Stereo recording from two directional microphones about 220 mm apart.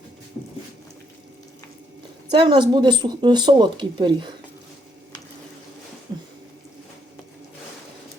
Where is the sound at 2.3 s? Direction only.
20° right (ahead or behind).